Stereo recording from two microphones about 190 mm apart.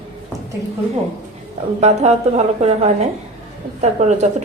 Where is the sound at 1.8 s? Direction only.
35° right (ahead or behind).